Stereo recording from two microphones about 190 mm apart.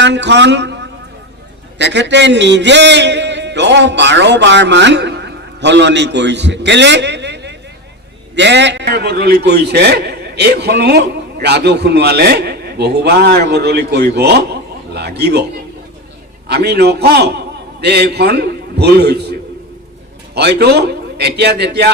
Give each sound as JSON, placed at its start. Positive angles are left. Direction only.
{"t": 0.0, "sound": "a man's voice", "side_deg": -65}
{"t": 1.8, "sound": "a man's voice", "side_deg": -65}
{"t": 16.5, "sound": "a man's voice", "side_deg": -60}